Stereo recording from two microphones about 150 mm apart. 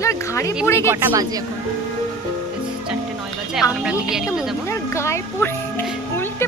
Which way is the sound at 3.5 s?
5° right (ahead or behind).